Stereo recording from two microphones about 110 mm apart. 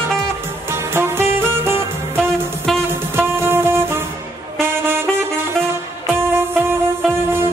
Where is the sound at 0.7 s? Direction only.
20° right (ahead or behind).